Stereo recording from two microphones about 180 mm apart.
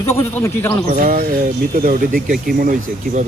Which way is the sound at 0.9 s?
50° right (ahead or behind).